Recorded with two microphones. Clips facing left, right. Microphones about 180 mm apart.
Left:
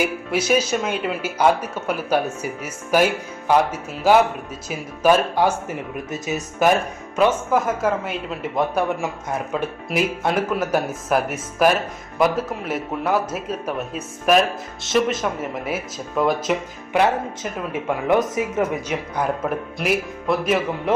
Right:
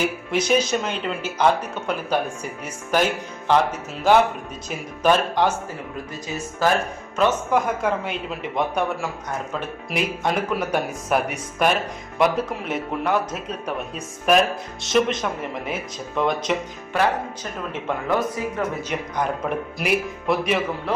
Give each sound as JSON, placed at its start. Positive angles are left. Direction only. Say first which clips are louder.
{"t": 0.0, "sound": "speech", "louder": "left 1 dB", "side_deg": 5}
{"t": 5.6, "sound": "speech", "louder": "left 4 dB", "side_deg": 20}
{"t": 7.2, "sound": "speech", "louder": "left 2 dB", "side_deg": 5}
{"t": 18.1, "sound": "speech", "louder": "left 5 dB", "side_deg": 20}
{"t": 18.9, "sound": "speech", "louder": "left 2 dB", "side_deg": 10}